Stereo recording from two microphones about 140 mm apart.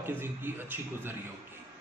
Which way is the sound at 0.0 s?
15° right (ahead or behind).